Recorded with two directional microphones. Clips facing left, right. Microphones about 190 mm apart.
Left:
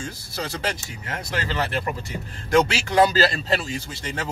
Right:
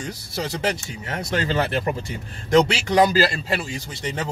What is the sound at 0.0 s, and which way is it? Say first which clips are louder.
Speech: right 2 dB; 20° right (ahead or behind).